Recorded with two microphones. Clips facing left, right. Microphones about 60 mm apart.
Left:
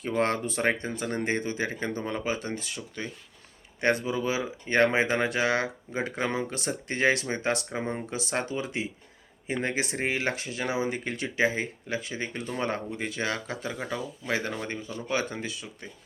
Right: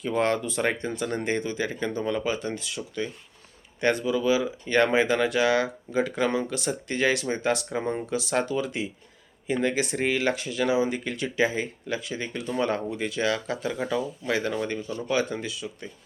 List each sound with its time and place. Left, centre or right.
0.2 s speech: left
7.7 s speech: centre
8.1 s speech: left
15.1 s speech: left